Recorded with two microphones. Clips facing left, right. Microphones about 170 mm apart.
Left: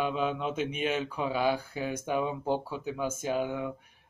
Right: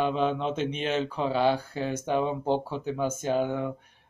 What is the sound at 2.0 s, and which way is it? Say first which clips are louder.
Speech: right 4 dB; 30° right (ahead or behind).